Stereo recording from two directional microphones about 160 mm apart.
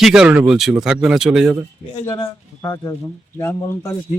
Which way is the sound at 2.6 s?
20° left (ahead or behind).